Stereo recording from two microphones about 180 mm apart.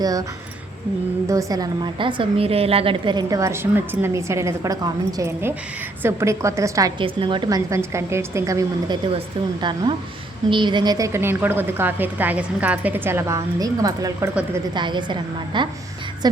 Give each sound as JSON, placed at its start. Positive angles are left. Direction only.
{"t": 0.0, "sound": "a woman's voice", "side_deg": -20}
{"t": 1.3, "sound": "a woman's voice", "side_deg": -20}